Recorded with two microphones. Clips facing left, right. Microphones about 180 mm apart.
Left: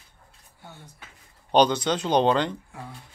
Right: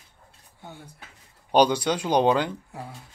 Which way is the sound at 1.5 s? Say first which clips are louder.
Even; 10° right (ahead or behind).